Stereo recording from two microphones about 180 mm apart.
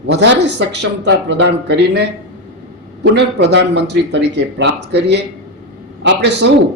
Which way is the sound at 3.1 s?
75° right (ahead or behind).